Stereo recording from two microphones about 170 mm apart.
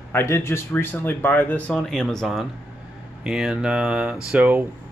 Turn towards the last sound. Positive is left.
turn(degrees=-10)  # may be behind; listen again after turning